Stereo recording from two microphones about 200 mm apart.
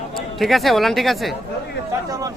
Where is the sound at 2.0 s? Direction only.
15° right (ahead or behind).